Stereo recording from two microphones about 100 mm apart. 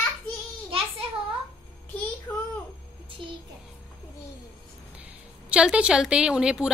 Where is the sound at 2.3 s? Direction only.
20° left (ahead or behind).